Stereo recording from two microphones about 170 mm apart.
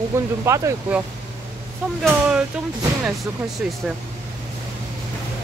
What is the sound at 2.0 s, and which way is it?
Speech, 5° right (ahead or behind).